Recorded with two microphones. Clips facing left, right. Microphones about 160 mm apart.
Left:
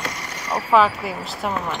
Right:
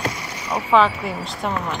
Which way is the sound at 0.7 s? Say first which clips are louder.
Even; 5° left (ahead or behind).